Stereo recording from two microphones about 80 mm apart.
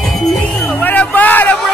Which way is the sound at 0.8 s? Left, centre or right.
Left.